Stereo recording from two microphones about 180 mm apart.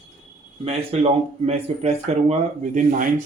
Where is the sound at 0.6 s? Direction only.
35° right (ahead or behind).